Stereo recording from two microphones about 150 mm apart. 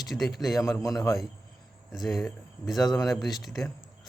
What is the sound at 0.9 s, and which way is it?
Speech, 20° left (ahead or behind).